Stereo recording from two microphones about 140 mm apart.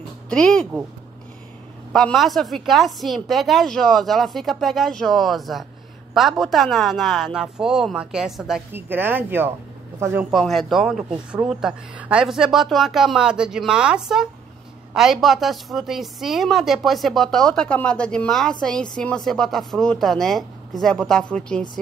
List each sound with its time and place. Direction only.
0.3 s a woman's voice: 5° left (ahead or behind)
1.9 s a woman's voice: centre (ahead or behind)
8.7 s speech: 15° right (ahead or behind)
10.3 s a woman's voice: centre (ahead or behind)